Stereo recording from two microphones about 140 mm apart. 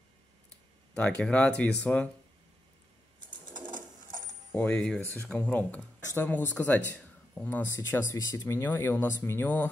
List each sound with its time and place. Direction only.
0.9 s speech: 5° left (ahead or behind)
4.5 s speech: 10° left (ahead or behind)